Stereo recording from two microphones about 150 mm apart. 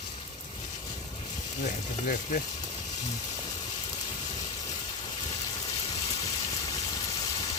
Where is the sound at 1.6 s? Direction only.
55° left (ahead or behind).